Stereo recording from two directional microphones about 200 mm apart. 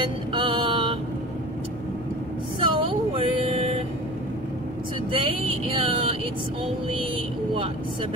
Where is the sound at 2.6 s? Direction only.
25° right (ahead or behind).